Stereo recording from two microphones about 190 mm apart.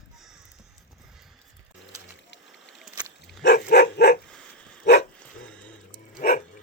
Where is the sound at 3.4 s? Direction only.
60° left (ahead or behind).